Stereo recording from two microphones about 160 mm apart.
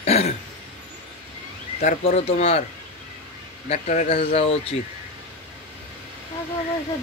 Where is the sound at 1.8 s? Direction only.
45° left (ahead or behind).